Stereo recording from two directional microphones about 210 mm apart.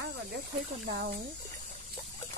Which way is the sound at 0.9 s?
50° right (ahead or behind).